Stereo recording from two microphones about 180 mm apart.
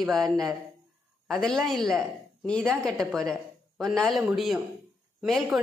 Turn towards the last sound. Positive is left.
turn(degrees=0)  # may be behind; listen again after turning